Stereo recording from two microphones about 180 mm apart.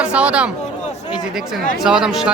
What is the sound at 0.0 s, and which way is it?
Speech, 5° right (ahead or behind).